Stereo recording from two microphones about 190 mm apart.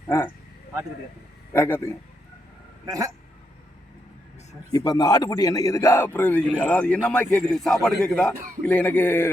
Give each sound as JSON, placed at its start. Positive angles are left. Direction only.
{"t": 0.1, "sound": "a sound", "side_deg": 15}
{"t": 1.5, "sound": "a man's voice", "side_deg": 10}
{"t": 2.8, "sound": "speech", "side_deg": -15}
{"t": 4.7, "sound": "a man's voice", "side_deg": 20}